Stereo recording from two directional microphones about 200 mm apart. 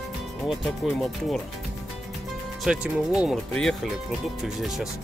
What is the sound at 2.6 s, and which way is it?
Speech, centre (ahead or behind).